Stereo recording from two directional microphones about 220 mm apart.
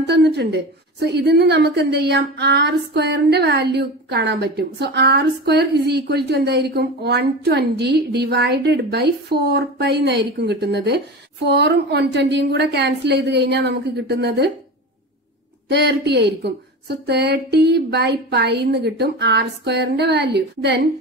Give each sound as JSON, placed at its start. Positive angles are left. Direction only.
{"t": 0.0, "sound": "a woman's voice", "side_deg": -50}
{"t": 15.7, "sound": "a woman's voice", "side_deg": -50}